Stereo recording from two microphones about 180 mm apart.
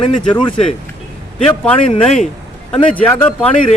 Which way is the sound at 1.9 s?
35° left (ahead or behind).